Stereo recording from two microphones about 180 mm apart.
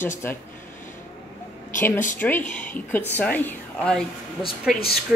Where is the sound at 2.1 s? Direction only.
10° left (ahead or behind).